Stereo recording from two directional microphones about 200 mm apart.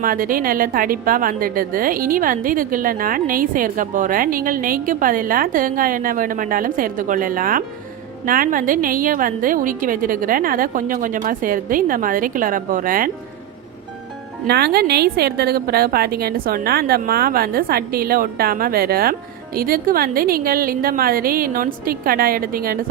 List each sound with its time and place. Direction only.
0.0 s a woman's voice: 45° right (ahead or behind)
14.4 s a woman's voice: 55° right (ahead or behind)